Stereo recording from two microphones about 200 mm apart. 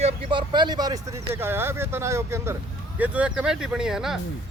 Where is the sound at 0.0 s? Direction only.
25° right (ahead or behind).